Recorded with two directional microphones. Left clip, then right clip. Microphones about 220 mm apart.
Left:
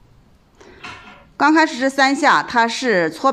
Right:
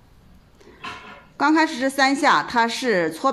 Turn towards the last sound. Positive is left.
turn(degrees=15)  # may be behind; listen again after turning